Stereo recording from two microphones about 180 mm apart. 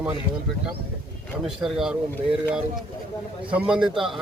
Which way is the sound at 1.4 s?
5° right (ahead or behind).